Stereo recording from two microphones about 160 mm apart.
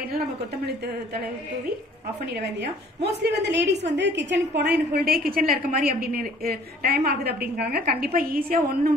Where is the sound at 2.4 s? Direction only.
90° right.